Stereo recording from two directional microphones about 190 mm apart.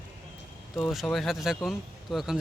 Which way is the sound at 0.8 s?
Centre (ahead or behind).